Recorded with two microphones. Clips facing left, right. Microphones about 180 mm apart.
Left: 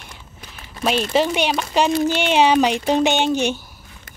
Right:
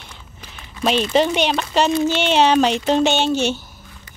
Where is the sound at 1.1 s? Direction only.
5° left (ahead or behind).